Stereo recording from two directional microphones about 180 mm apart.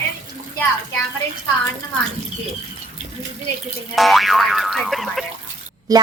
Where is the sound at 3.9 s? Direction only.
Centre (ahead or behind).